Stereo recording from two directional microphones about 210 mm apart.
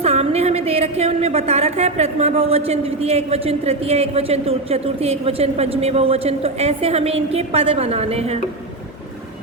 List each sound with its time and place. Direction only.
0.0 s a woman's voice: 30° right (ahead or behind)